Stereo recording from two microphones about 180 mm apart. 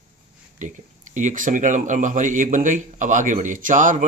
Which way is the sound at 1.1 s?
45° right (ahead or behind).